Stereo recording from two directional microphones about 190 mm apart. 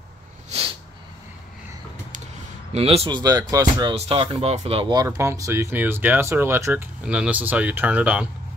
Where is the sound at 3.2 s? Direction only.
20° right (ahead or behind).